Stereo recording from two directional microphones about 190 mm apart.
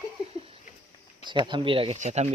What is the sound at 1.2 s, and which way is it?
Speech, 25° right (ahead or behind).